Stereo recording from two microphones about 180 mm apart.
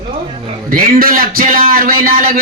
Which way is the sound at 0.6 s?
50° right (ahead or behind).